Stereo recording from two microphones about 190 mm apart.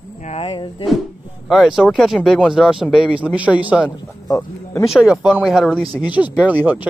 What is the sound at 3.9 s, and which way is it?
Speech, 15° left (ahead or behind).